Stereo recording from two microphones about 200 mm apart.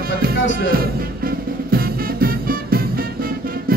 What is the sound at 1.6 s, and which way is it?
Music, 50° right (ahead or behind).